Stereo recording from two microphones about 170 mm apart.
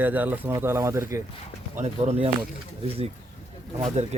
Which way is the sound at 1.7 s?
40° right (ahead or behind).